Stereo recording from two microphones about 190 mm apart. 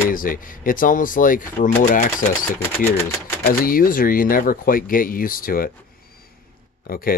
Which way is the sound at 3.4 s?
50° left (ahead or behind).